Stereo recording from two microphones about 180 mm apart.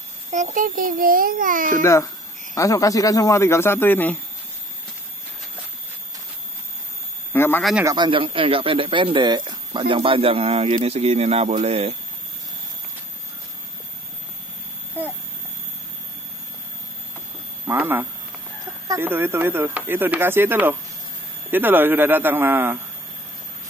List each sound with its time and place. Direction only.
0.3 s a child's voice: 45° right (ahead or behind)
1.8 s speech: 15° left (ahead or behind)
7.3 s speech: 10° left (ahead or behind)
7.8 s speech: 25° right (ahead or behind)
17.6 s speech: 10° right (ahead or behind)